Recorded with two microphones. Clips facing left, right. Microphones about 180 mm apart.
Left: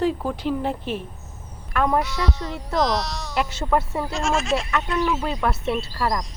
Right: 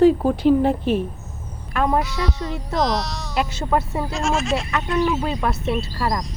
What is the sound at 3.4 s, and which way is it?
Speech, 15° right (ahead or behind).